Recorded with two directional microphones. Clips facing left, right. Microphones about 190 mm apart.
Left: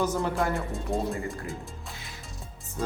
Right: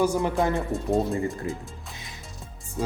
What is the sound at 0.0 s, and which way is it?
Speech, 15° right (ahead or behind).